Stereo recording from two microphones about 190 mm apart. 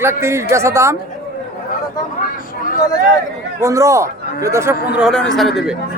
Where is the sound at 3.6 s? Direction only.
15° right (ahead or behind).